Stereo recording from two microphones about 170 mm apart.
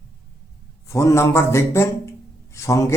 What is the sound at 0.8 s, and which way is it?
A man's voice, 15° left (ahead or behind).